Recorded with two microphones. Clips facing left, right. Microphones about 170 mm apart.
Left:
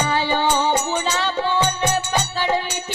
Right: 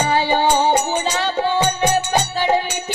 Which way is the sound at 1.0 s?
15° right (ahead or behind).